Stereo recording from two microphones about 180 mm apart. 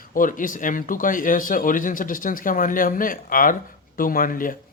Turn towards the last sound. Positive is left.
turn(degrees=50)  # may be behind; listen again after turning